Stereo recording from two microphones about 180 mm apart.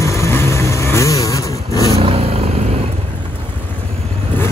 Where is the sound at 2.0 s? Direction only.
30° right (ahead or behind).